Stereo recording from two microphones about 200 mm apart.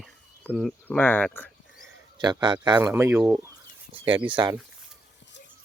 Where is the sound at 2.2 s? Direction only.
20° right (ahead or behind).